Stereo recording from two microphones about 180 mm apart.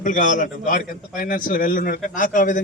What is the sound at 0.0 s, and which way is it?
A man's voice, 45° left (ahead or behind).